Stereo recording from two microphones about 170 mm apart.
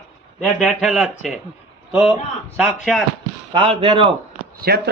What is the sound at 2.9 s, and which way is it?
Speech, centre (ahead or behind).